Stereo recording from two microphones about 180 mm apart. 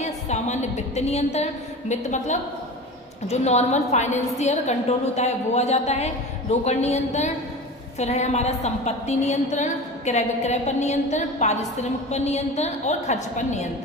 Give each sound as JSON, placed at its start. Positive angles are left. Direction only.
{"t": 0.0, "sound": "a woman's voice", "side_deg": 40}